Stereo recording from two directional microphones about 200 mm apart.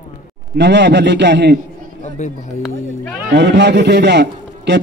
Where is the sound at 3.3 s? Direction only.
55° right (ahead or behind).